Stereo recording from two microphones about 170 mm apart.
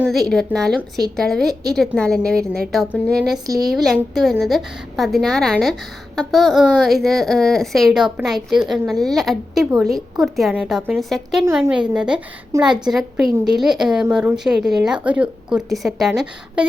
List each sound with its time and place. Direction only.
0.0 s speech: centre (ahead or behind)
12.5 s a woman's voice: 20° right (ahead or behind)
12.9 s speech: centre (ahead or behind)